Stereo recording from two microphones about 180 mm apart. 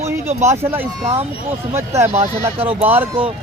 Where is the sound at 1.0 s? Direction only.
30° right (ahead or behind).